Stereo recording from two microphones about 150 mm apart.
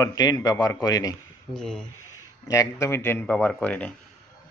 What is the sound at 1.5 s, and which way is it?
Speech, 5° left (ahead or behind).